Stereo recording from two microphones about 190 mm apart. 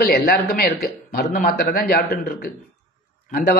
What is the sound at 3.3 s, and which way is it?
Speech, 60° left (ahead or behind).